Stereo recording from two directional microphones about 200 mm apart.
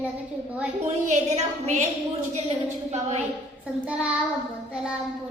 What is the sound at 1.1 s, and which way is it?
Speech, 35° right (ahead or behind).